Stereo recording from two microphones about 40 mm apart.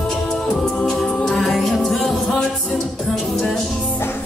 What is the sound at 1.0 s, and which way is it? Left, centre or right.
Music, centre.